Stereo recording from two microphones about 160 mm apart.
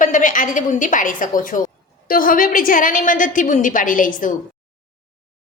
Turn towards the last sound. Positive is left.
turn(degrees=55)  # may be behind; listen again after turning